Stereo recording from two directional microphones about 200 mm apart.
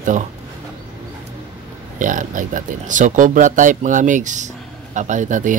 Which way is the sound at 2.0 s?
40° right (ahead or behind).